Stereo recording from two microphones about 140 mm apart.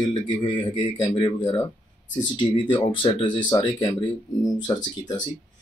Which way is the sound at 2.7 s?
35° left (ahead or behind).